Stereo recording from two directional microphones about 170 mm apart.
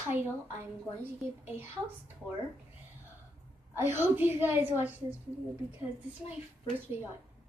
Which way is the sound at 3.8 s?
15° right (ahead or behind).